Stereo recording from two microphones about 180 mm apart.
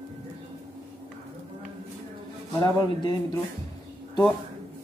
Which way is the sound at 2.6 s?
25° left (ahead or behind).